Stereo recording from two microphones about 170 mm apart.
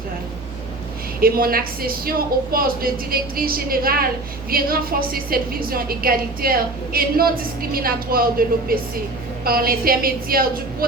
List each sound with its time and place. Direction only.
1.2 s a woman's voice: 60° right (ahead or behind)